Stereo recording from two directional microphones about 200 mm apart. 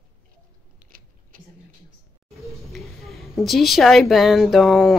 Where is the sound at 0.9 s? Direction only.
45° right (ahead or behind).